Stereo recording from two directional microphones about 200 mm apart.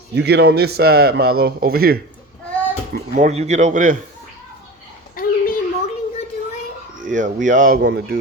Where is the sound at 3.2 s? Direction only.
35° right (ahead or behind).